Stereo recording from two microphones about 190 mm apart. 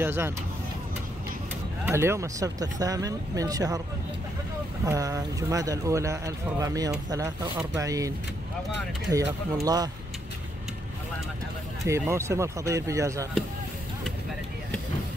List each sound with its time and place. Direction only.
0.0 s speech: 10° right (ahead or behind)
1.9 s speech: 15° right (ahead or behind)
4.8 s speech: 15° right (ahead or behind)
9.1 s speech: 20° right (ahead or behind)
11.8 s speech: 15° right (ahead or behind)